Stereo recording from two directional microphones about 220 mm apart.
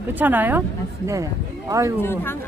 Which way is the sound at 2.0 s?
10° left (ahead or behind).